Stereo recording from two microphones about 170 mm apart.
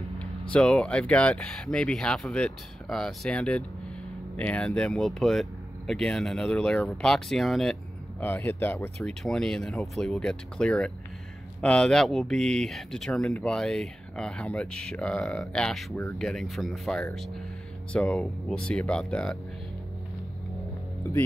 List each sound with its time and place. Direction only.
0.2 s speech: 5° left (ahead or behind)
8.2 s speech: 10° left (ahead or behind)